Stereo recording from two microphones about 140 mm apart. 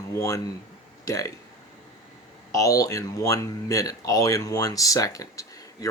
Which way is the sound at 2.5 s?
25° left (ahead or behind).